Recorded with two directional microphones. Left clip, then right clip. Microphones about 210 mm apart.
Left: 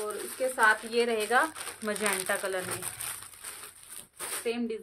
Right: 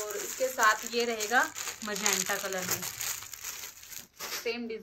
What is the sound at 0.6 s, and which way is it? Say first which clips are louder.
Speech: left 2 dB; 45° left (ahead or behind).